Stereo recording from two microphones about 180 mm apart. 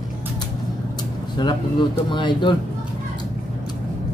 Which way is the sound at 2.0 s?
25° left (ahead or behind).